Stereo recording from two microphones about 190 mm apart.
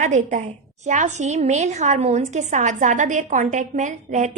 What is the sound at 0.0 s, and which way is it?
A woman's voice, 40° right (ahead or behind).